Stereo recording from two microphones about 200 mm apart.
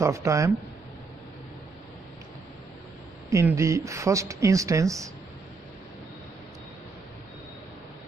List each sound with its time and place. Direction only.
0.0 s speech: 15° right (ahead or behind)
3.3 s speech: 15° right (ahead or behind)